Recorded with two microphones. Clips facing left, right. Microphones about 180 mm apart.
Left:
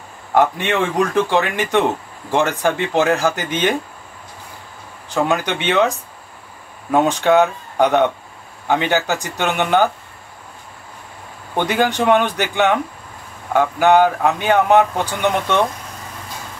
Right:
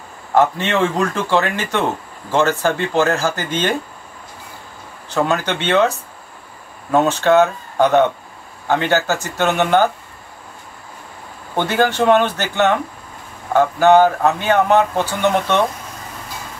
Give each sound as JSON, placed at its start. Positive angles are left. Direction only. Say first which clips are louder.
{"t": 0.3, "sound": "a man's voice", "louder": "right 1 dB", "side_deg": 15}
{"t": 5.1, "sound": "a man's voice", "louder": "even", "side_deg": 15}
{"t": 11.5, "sound": "a man's voice", "louder": "right 1 dB", "side_deg": 15}